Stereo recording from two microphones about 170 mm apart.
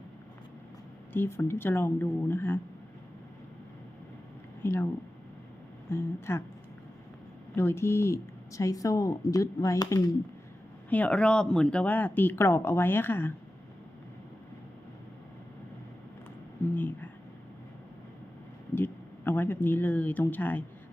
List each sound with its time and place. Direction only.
1.1 s speech: 10° left (ahead or behind)
4.6 s speech: 15° left (ahead or behind)
5.9 s speech: 15° left (ahead or behind)
7.5 s a woman's voice: 15° left (ahead or behind)
10.8 s speech: 10° left (ahead or behind)
16.7 s speech: 10° left (ahead or behind)
18.7 s speech: 10° left (ahead or behind)